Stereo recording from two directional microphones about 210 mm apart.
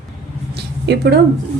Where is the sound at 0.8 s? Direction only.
55° right (ahead or behind).